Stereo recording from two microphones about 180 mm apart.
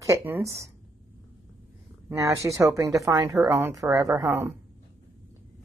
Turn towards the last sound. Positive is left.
turn(degrees=-15)  # may be behind; listen again after turning